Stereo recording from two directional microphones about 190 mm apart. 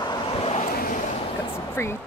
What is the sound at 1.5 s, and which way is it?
Speech, 15° left (ahead or behind).